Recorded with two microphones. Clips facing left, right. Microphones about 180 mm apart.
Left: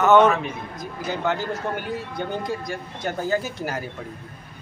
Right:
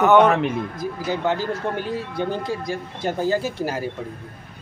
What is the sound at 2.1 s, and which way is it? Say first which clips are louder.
Speech: right 2 dB; 30° right (ahead or behind).